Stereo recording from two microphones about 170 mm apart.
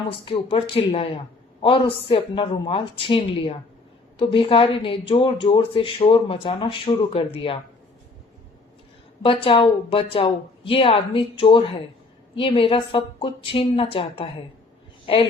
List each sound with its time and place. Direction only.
0.3 s speech: 30° left (ahead or behind)
9.2 s speech: 30° left (ahead or behind)